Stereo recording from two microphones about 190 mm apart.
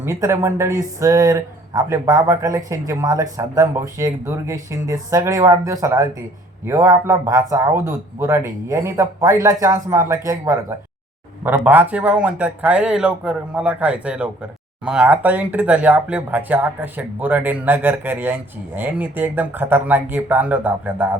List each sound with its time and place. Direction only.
0.0 s speech: 15° right (ahead or behind)